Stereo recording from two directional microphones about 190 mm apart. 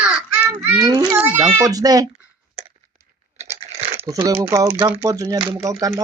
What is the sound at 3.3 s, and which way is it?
Crunch, 35° right (ahead or behind).